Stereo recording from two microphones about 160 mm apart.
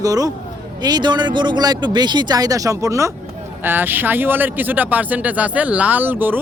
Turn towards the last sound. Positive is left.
turn(degrees=-10)  # may be behind; listen again after turning